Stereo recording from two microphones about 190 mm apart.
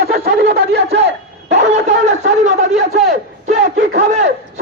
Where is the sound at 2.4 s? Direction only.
40° right (ahead or behind).